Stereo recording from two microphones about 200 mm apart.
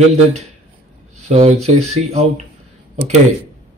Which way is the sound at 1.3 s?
30° right (ahead or behind).